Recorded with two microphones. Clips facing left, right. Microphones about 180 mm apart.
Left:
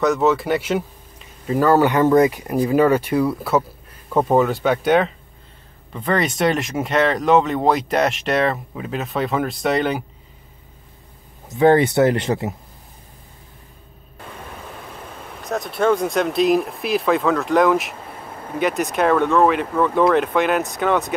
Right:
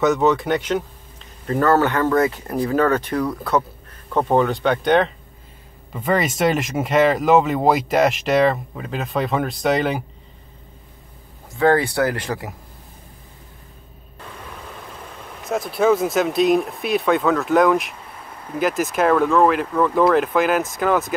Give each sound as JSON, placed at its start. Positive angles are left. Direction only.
{"t": 0.0, "sound": "speech", "side_deg": 0}
{"t": 11.4, "sound": "speech", "side_deg": 20}
{"t": 15.4, "sound": "speech", "side_deg": 0}